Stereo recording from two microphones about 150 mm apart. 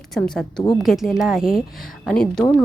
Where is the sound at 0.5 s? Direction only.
25° left (ahead or behind).